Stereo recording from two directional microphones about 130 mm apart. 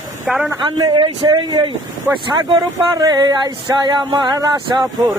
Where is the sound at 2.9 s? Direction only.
30° right (ahead or behind).